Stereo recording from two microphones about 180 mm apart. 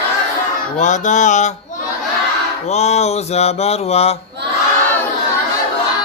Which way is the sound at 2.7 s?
40° left (ahead or behind).